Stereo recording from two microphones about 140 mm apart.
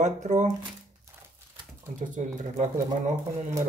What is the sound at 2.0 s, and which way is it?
Speech, 65° right (ahead or behind).